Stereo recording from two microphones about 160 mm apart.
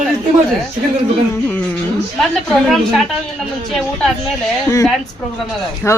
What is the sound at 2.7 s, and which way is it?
Speech, centre (ahead or behind).